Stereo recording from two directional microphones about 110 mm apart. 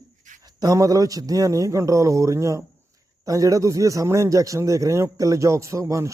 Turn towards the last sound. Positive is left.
turn(degrees=-30)  # may be behind; listen again after turning